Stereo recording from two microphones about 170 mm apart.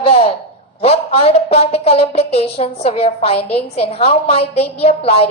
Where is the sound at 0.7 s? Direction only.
35° left (ahead or behind).